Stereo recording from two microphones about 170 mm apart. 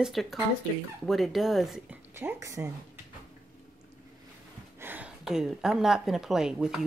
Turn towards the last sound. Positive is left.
turn(degrees=-5)  # may be behind; listen again after turning